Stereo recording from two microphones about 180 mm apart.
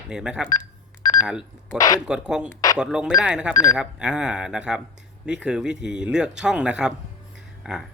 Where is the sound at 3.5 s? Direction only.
20° left (ahead or behind).